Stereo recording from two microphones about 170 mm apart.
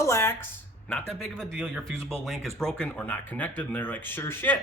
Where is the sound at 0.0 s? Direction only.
15° left (ahead or behind).